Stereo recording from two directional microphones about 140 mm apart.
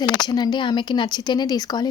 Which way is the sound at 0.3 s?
30° left (ahead or behind).